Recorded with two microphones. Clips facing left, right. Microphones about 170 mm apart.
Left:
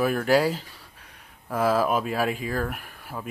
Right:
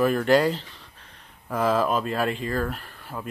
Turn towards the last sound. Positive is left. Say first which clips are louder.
# right 1 dB
turn(degrees=5)  # may be behind; listen again after turning